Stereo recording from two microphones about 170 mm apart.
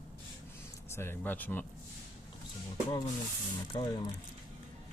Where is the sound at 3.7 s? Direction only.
25° left (ahead or behind).